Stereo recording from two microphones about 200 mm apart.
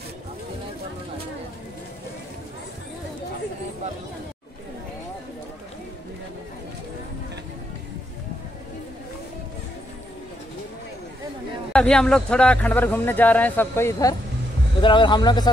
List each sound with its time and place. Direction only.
11.7 s a man's voice: 5° left (ahead or behind); by 15.5 s 20° left (ahead or behind)